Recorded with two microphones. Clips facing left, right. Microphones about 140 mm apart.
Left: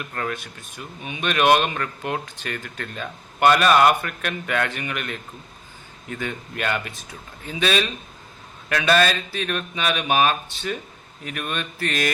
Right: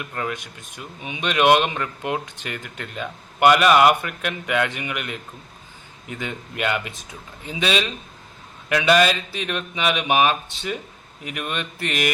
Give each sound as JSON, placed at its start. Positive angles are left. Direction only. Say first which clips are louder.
{"t": 0.0, "sound": "speech", "louder": "even", "side_deg": -10}